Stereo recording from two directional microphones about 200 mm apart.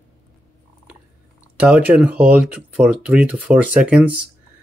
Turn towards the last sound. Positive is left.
turn(degrees=-5)  # may be behind; listen again after turning